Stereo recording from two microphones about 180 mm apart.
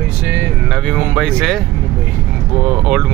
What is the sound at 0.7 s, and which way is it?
Speech, 5° left (ahead or behind).